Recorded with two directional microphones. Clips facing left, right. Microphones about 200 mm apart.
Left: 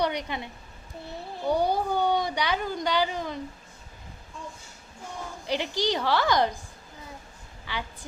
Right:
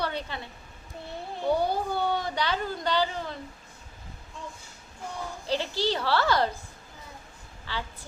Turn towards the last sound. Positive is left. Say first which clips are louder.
# left 1 dB
turn(degrees=15)  # may be behind; listen again after turning